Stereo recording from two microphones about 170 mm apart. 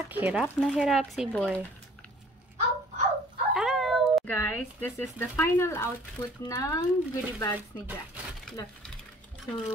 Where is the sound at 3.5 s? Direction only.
5° right (ahead or behind).